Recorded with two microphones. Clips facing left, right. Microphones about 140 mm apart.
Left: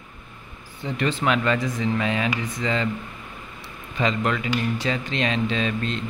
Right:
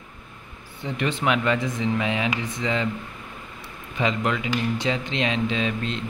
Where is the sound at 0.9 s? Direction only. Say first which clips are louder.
Left 1 dB; 15° right (ahead or behind).